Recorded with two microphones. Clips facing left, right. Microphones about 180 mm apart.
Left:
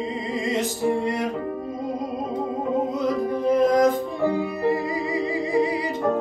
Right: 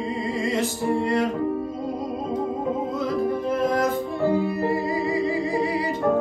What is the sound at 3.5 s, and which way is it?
Music, 15° left (ahead or behind).